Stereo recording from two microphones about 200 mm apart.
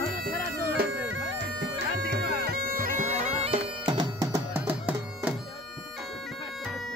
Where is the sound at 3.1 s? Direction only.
30° right (ahead or behind); by 5.3 s 10° right (ahead or behind).